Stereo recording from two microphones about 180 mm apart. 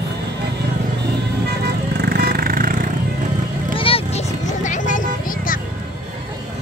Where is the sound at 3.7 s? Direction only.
30° left (ahead or behind).